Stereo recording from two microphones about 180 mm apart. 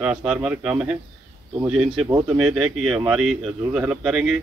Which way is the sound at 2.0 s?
15° right (ahead or behind).